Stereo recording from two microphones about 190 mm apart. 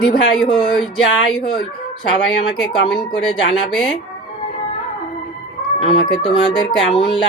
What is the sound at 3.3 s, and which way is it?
Speech, 25° left (ahead or behind).